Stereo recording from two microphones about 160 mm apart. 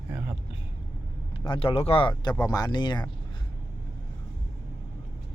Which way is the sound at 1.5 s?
35° left (ahead or behind).